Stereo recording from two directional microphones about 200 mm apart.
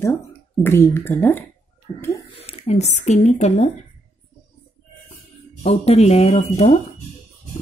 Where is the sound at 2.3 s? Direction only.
30° left (ahead or behind).